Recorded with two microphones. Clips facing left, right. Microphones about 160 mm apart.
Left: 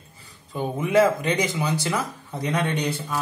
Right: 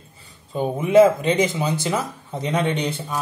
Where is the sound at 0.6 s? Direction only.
25° right (ahead or behind).